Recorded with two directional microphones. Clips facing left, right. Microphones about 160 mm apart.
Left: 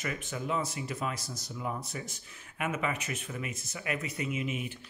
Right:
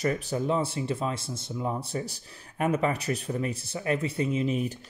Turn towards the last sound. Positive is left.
turn(degrees=-35)  # may be behind; listen again after turning